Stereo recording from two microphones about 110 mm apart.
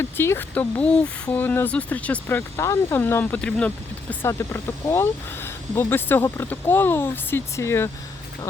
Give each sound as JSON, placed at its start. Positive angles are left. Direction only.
{"t": 0.0, "sound": "speech", "side_deg": 20}
{"t": 4.3, "sound": "speech", "side_deg": 25}